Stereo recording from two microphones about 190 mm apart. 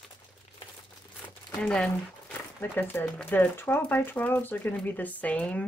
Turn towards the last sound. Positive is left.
turn(degrees=5)  # may be behind; listen again after turning